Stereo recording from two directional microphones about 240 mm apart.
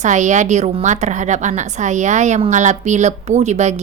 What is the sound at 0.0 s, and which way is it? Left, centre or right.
A woman's voice, right.